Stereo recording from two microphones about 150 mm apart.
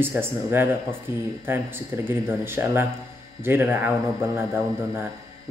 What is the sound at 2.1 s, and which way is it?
Speech, 15° right (ahead or behind).